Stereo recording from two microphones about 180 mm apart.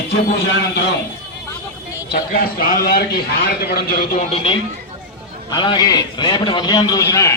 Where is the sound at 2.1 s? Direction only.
55° left (ahead or behind); by 4.5 s 40° left (ahead or behind).